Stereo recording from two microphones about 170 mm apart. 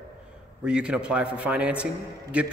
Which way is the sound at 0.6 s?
5° right (ahead or behind).